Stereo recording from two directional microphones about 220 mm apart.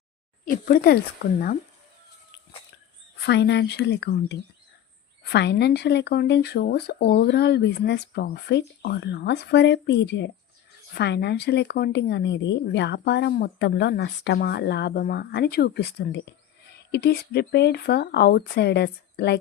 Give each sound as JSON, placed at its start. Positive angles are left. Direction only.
{"t": 0.5, "sound": "speech", "side_deg": 40}
{"t": 3.2, "sound": "speech", "side_deg": 50}